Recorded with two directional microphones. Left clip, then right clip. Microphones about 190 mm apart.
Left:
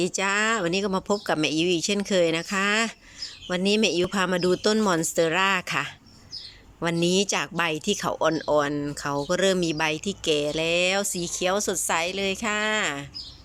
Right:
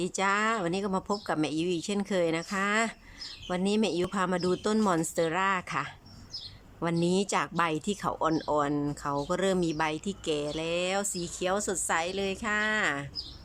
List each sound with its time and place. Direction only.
0.0 s speech: 5° left (ahead or behind)